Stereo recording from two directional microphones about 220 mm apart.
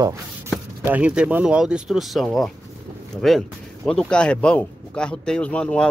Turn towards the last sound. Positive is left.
turn(degrees=5)  # may be behind; listen again after turning